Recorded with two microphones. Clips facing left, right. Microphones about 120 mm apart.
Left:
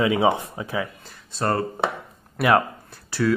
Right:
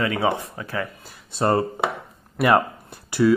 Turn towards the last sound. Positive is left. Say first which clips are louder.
# right 5 dB
turn(degrees=-15)  # may be behind; listen again after turning